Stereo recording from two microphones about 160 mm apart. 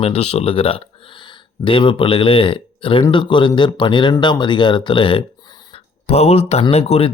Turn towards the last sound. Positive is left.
turn(degrees=40)  # may be behind; listen again after turning